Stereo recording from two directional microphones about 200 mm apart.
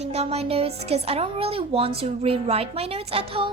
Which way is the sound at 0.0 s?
30° right (ahead or behind).